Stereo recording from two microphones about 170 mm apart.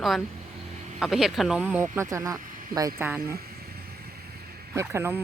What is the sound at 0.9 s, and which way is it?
Speech, centre (ahead or behind).